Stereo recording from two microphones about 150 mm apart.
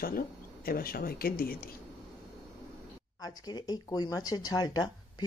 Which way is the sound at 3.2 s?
25° left (ahead or behind).